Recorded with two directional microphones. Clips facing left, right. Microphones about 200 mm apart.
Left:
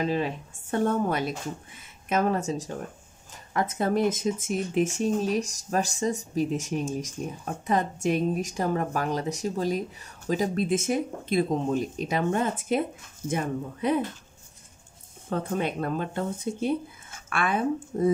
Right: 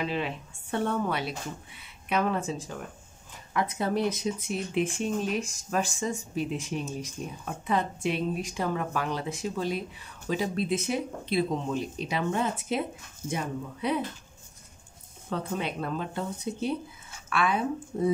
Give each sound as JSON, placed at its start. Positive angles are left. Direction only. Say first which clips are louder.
{"t": 0.0, "sound": "speech", "louder": "left 4 dB", "side_deg": 40}
{"t": 15.2, "sound": "speech", "louder": "left 3 dB", "side_deg": 50}